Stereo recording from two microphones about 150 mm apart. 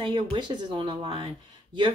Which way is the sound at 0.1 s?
30° right (ahead or behind).